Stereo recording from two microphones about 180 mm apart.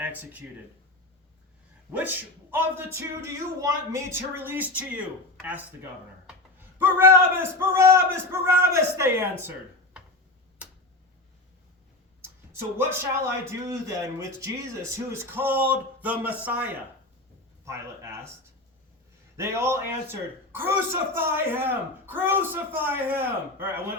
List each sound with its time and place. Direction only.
1.9 s a man's voice: 10° right (ahead or behind)
12.7 s a man's voice: 15° right (ahead or behind)
19.4 s a man's voice: 15° right (ahead or behind)